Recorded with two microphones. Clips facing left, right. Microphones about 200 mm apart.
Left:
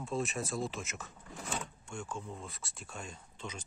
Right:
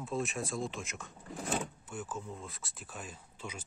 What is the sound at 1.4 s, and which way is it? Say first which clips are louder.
Speech: right 5 dB; 35° right (ahead or behind).